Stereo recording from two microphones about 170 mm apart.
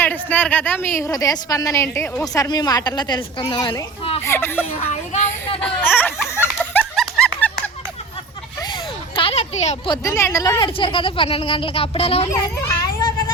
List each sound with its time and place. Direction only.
0.0 s a woman's voice: 10° left (ahead or behind)
4.9 s speech: 35° left (ahead or behind)
5.6 s speech: 10° left (ahead or behind)
6.7 s a sound: 5° left (ahead or behind)
8.6 s a sound: 30° left (ahead or behind)
9.9 s speech: 20° left (ahead or behind); by 12.3 s 35° left (ahead or behind)
12.3 s a child's voice: 20° left (ahead or behind)